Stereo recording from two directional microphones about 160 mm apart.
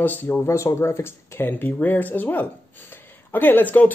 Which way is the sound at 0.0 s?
10° left (ahead or behind).